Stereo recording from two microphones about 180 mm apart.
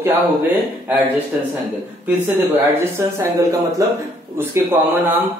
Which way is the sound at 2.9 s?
15° right (ahead or behind).